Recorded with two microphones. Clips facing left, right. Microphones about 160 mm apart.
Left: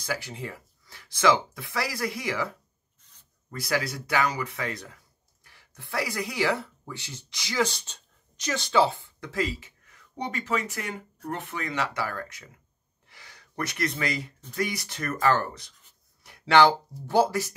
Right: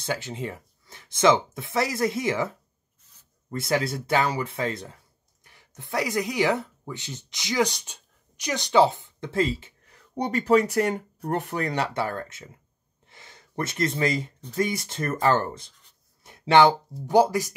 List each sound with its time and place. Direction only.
0.0 s speech: 20° right (ahead or behind)
16.3 s a sound: 20° right (ahead or behind)
17.1 s speech: 15° right (ahead or behind)